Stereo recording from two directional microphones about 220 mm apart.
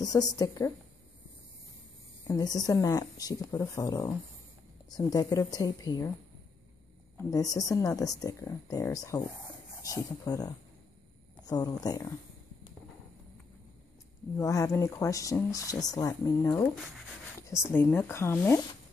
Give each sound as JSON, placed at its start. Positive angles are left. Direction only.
{"t": 0.0, "sound": "speech", "side_deg": 15}
{"t": 2.2, "sound": "speech", "side_deg": 15}
{"t": 7.2, "sound": "speech", "side_deg": 15}
{"t": 14.3, "sound": "speech", "side_deg": 15}